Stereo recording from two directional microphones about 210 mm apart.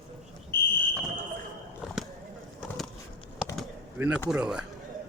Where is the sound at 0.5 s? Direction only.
45° left (ahead or behind).